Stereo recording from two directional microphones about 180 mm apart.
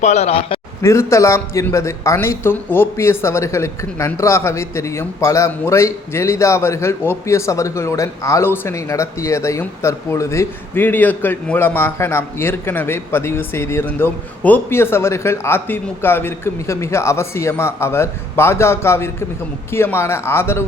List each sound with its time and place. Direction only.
0.0 s a man's voice: 35° left (ahead or behind)
0.8 s a man's voice: 15° left (ahead or behind)